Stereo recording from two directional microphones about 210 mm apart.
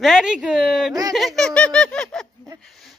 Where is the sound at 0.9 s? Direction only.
20° right (ahead or behind).